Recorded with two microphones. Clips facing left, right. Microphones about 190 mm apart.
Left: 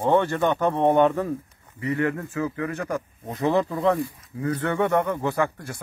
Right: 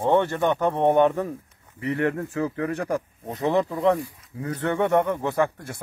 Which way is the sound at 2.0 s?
35° right (ahead or behind).